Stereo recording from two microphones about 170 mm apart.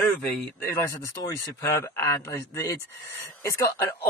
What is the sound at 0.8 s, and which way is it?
Speech, 20° left (ahead or behind).